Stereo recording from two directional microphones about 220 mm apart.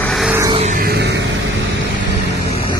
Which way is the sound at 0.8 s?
45° right (ahead or behind).